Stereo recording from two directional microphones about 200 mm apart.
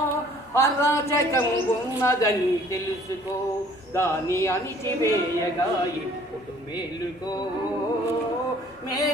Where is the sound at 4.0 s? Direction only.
15° left (ahead or behind).